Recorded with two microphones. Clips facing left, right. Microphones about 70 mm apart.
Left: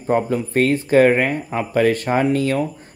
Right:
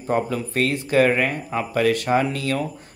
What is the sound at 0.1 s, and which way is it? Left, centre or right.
A man's voice, left.